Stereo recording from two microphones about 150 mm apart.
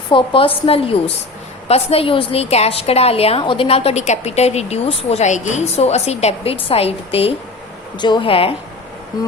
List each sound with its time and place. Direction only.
0.1 s a woman's voice: 35° left (ahead or behind)
7.9 s a woman's voice: 30° left (ahead or behind)